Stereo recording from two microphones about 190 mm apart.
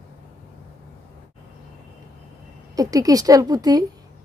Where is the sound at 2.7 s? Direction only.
20° right (ahead or behind).